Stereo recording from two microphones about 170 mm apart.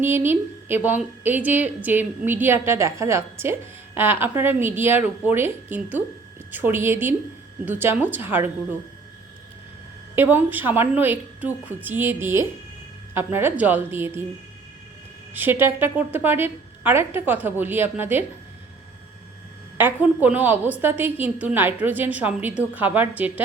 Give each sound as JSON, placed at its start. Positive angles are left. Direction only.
{"t": 0.0, "sound": "a woman's voice", "side_deg": -15}
{"t": 10.2, "sound": "a woman's voice", "side_deg": -10}
{"t": 15.3, "sound": "a woman's voice", "side_deg": -10}
{"t": 19.7, "sound": "a woman's voice", "side_deg": -10}